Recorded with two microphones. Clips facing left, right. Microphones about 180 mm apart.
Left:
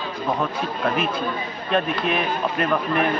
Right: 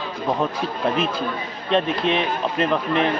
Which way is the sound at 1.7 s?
30° right (ahead or behind).